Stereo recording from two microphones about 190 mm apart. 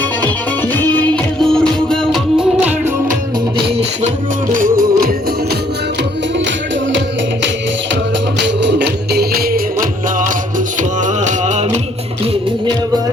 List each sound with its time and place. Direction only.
0.7 s music: 10° left (ahead or behind); by 2.9 s 10° right (ahead or behind)
4.5 s music: 45° right (ahead or behind)
8.6 s music: 60° right (ahead or behind)
11.0 s music: 40° right (ahead or behind)